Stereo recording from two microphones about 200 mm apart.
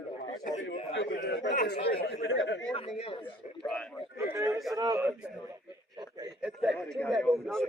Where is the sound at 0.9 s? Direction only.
65° left (ahead or behind).